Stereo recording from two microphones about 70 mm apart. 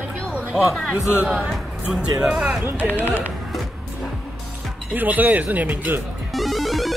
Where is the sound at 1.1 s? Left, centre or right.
Right.